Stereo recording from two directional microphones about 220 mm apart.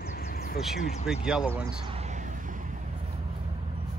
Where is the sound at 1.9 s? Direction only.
30° right (ahead or behind).